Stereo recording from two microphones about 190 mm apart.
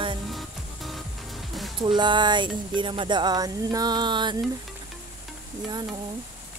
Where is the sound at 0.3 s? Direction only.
Centre (ahead or behind).